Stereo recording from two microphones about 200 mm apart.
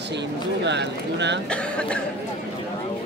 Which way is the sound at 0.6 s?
60° right (ahead or behind).